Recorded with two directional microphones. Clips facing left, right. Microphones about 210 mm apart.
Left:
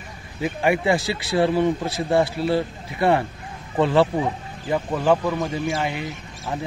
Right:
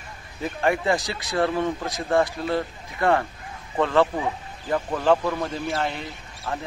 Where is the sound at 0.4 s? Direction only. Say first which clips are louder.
Left 3 dB; 15° left (ahead or behind).